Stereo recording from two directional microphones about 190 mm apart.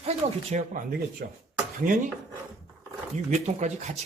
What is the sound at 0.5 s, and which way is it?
Speech, 45° right (ahead or behind).